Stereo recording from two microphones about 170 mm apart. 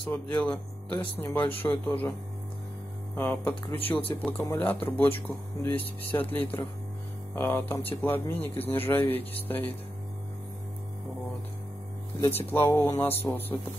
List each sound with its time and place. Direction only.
0.0 s speech: 10° left (ahead or behind)
3.2 s speech: 10° left (ahead or behind)
3.6 s speech: 30° left (ahead or behind)
4.1 s speech: 10° left (ahead or behind)
12.2 s speech: 15° left (ahead or behind)